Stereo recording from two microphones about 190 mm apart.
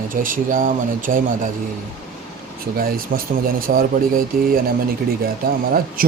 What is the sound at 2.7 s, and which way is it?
Speech, 50° right (ahead or behind).